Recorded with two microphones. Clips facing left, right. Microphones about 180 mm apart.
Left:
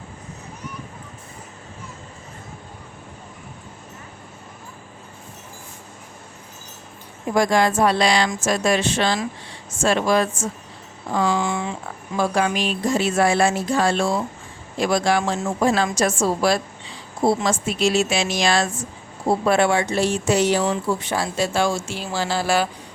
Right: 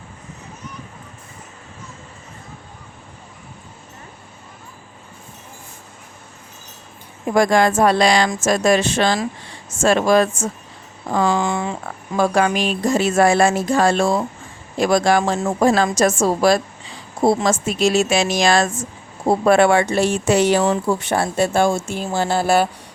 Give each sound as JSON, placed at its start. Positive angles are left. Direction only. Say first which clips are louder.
{"t": 7.3, "sound": "speech", "louder": "right 3 dB", "side_deg": -55}
{"t": 12.1, "sound": "speech", "louder": "right 4 dB", "side_deg": -55}